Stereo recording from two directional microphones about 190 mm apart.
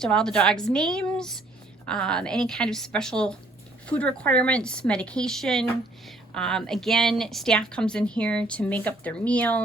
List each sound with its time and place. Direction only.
0.0 s a woman's voice: 5° left (ahead or behind)